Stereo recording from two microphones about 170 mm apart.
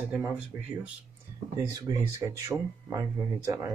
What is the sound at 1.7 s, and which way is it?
A man's voice, 20° right (ahead or behind).